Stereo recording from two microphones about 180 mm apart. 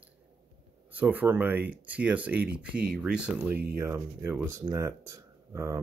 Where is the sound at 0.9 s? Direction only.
10° right (ahead or behind).